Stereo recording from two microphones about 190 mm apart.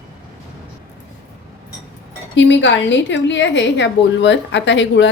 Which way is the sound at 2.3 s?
75° left (ahead or behind).